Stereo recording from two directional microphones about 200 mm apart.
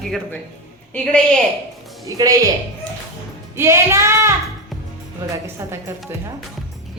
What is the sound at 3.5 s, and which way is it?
Speech, 15° right (ahead or behind).